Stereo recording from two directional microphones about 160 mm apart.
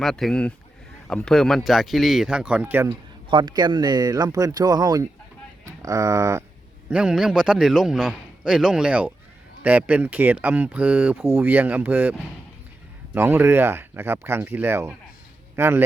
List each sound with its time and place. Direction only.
0.0 s a man's voice: centre (ahead or behind)
3.2 s speech: 30° right (ahead or behind)
6.9 s a man's voice: 5° right (ahead or behind)
13.1 s speech: 15° right (ahead or behind)